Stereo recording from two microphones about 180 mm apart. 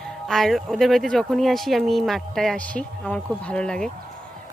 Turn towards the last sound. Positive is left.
turn(degrees=5)  # may be behind; listen again after turning